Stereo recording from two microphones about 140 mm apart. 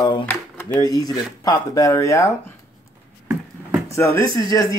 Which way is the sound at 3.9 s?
20° left (ahead or behind).